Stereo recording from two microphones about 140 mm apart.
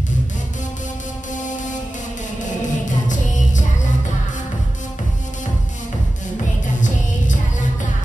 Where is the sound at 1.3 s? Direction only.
65° left (ahead or behind).